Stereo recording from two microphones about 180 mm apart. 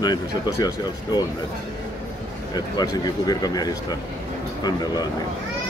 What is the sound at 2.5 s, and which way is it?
Speech, 20° left (ahead or behind).